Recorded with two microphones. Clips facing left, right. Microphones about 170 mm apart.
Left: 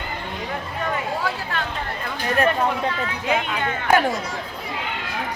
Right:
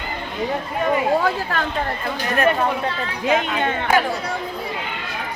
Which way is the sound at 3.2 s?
25° right (ahead or behind).